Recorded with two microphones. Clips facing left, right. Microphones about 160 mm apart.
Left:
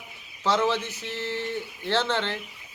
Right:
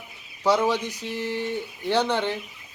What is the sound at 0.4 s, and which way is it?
Speech, 10° right (ahead or behind).